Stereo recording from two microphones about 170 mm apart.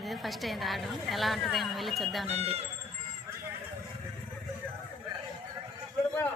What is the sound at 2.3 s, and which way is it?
Speech, 35° right (ahead or behind).